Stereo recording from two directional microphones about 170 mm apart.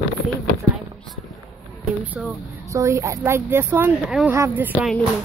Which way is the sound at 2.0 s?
10° right (ahead or behind).